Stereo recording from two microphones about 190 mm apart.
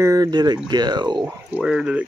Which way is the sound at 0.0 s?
20° right (ahead or behind).